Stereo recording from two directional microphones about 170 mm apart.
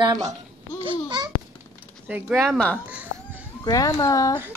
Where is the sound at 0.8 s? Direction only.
25° right (ahead or behind).